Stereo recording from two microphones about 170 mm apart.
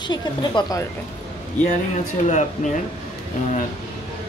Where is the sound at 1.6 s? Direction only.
45° left (ahead or behind).